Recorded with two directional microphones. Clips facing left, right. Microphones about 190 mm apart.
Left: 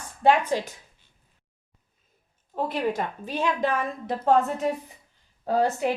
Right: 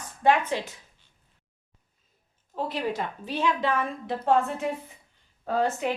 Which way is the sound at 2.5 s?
50° left (ahead or behind).